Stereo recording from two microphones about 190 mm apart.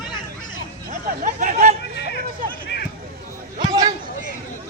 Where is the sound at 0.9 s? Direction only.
45° right (ahead or behind).